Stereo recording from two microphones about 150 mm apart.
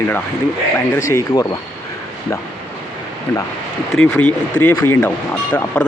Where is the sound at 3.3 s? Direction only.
25° left (ahead or behind).